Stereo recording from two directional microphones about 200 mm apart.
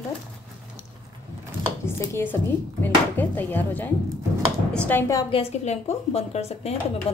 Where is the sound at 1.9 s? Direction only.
10° left (ahead or behind).